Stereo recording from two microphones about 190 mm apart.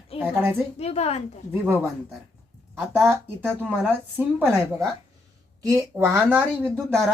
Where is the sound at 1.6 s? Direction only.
10° right (ahead or behind).